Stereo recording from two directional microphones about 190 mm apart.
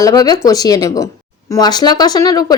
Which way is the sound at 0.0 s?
20° left (ahead or behind).